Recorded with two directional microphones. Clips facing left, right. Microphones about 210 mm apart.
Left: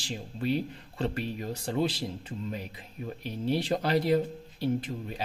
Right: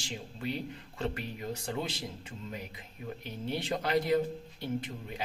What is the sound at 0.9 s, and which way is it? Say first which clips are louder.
Speech: left 5 dB; 35° left (ahead or behind).